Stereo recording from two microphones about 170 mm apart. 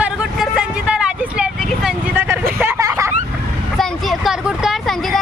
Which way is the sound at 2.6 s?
20° right (ahead or behind).